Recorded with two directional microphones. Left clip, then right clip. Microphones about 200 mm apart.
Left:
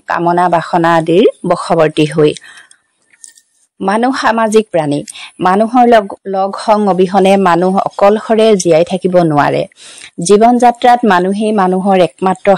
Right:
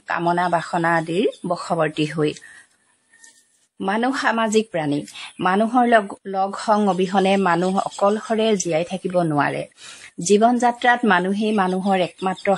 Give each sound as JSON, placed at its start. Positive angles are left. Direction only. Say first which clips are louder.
{"t": 0.0, "sound": "speech", "louder": "left 9 dB", "side_deg": 40}
{"t": 3.8, "sound": "speech", "louder": "left 9 dB", "side_deg": 45}